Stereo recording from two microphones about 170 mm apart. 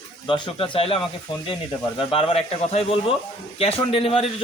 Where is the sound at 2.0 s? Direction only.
35° left (ahead or behind).